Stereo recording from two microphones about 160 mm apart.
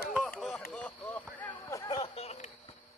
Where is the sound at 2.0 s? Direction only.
40° left (ahead or behind).